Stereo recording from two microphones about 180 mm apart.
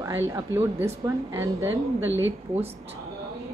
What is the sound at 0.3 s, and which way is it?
A woman's voice, 15° right (ahead or behind).